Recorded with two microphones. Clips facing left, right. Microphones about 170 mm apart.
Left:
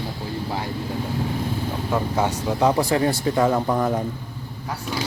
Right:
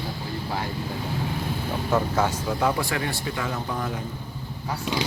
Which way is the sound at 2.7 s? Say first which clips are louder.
Left 7 dB; 35° left (ahead or behind).